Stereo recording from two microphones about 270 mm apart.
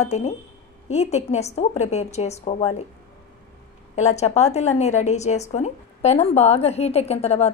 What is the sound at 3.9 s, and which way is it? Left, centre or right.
A woman's voice, left.